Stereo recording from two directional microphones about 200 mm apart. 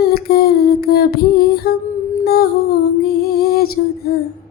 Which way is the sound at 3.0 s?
50° left (ahead or behind).